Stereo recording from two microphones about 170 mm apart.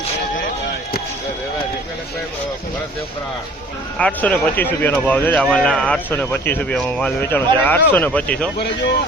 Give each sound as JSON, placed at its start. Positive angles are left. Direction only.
{"t": 3.9, "sound": "speech", "side_deg": 5}
{"t": 8.5, "sound": "speech", "side_deg": 80}